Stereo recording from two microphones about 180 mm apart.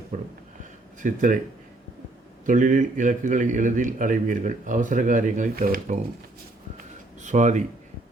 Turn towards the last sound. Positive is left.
turn(degrees=-40)  # may be behind; listen again after turning